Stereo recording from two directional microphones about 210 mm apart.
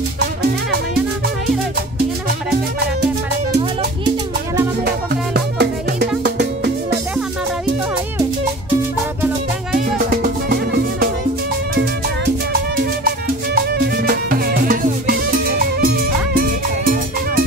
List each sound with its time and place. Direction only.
4.8 s music: 50° right (ahead or behind)
9.8 s music: 40° right (ahead or behind)
13.7 s music: 45° right (ahead or behind)